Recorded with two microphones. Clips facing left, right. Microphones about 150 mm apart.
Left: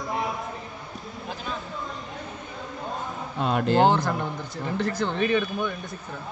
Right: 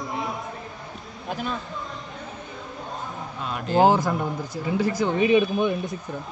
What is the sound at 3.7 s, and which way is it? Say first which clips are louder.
Speech: right 3 dB; 5° right (ahead or behind).